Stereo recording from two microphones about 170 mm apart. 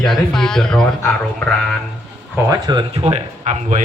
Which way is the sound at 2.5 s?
25° right (ahead or behind).